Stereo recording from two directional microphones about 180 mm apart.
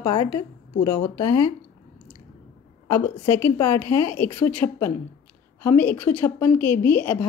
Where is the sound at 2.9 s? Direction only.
15° left (ahead or behind).